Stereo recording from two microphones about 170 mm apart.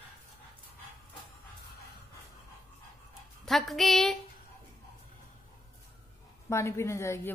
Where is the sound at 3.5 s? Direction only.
Centre (ahead or behind).